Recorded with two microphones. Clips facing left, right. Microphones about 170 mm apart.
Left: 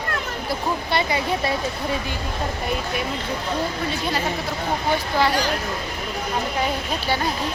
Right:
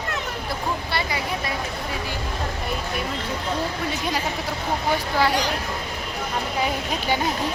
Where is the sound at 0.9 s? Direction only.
25° left (ahead or behind).